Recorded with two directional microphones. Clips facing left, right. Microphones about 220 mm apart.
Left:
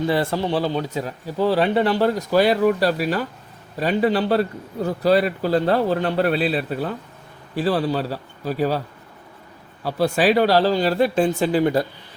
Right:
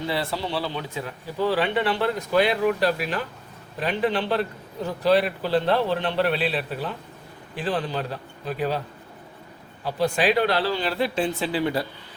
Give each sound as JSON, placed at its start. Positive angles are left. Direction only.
{"t": 0.1, "sound": "speech", "side_deg": 50}
{"t": 9.8, "sound": "speech", "side_deg": 40}